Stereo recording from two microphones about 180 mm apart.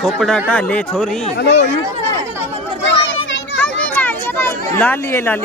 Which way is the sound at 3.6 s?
10° left (ahead or behind).